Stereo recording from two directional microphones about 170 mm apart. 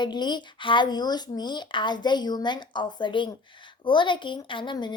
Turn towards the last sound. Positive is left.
turn(degrees=25)  # may be behind; listen again after turning